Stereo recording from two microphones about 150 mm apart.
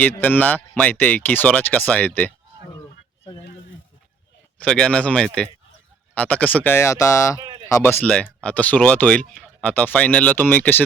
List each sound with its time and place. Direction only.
0.0 s speech: 10° left (ahead or behind)
4.6 s speech: 5° left (ahead or behind)
7.3 s a sound: 30° right (ahead or behind)
7.7 s speech: 15° left (ahead or behind)